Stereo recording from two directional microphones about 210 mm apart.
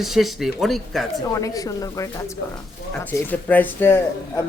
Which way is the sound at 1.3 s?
15° left (ahead or behind).